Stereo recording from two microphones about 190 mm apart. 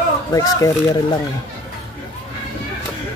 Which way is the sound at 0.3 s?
20° left (ahead or behind).